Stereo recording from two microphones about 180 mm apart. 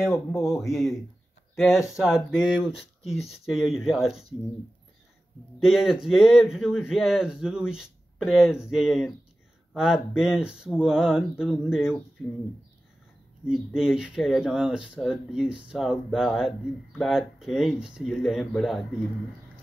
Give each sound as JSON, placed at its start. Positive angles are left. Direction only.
{"t": 0.1, "sound": "a man's voice", "side_deg": 15}
{"t": 0.6, "sound": "speech", "side_deg": 0}
{"t": 5.6, "sound": "speech", "side_deg": 0}
{"t": 13.7, "sound": "speech", "side_deg": -5}